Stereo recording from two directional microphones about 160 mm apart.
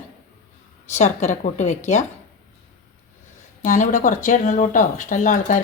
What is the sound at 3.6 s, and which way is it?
Speech, 55° left (ahead or behind).